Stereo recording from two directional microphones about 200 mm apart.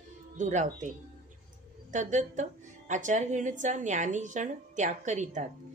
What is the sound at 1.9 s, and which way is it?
A woman's voice, 40° right (ahead or behind).